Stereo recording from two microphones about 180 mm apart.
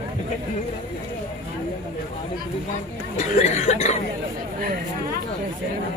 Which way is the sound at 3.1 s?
40° left (ahead or behind).